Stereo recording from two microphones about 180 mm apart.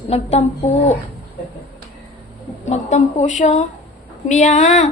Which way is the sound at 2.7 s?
40° left (ahead or behind).